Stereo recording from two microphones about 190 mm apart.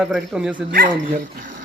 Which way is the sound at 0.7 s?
50° right (ahead or behind).